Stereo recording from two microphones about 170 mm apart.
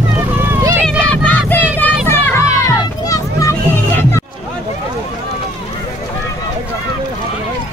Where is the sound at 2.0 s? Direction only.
15° left (ahead or behind).